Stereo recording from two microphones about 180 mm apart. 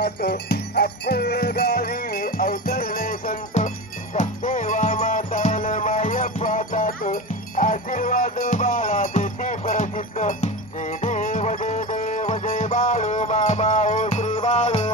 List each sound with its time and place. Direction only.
0.0 s music: 65° left (ahead or behind); by 14.9 s 40° left (ahead or behind)